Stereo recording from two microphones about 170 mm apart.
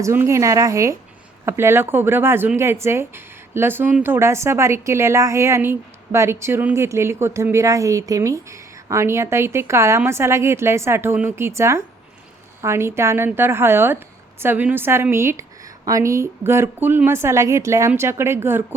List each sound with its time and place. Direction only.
0.0 s speech: 15° right (ahead or behind)